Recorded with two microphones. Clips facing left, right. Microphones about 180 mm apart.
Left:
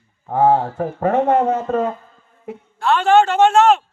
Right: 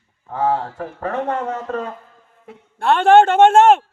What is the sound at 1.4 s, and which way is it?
Speech, 25° left (ahead or behind).